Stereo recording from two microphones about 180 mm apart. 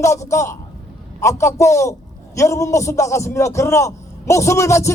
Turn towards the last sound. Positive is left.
turn(degrees=15)  # may be behind; listen again after turning